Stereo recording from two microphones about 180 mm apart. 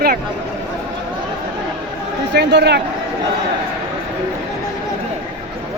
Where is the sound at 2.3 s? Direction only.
70° right (ahead or behind).